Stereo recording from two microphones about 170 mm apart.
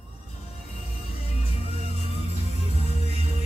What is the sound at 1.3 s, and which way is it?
Music, 35° left (ahead or behind).